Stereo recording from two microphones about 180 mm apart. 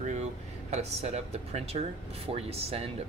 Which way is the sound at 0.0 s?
40° right (ahead or behind).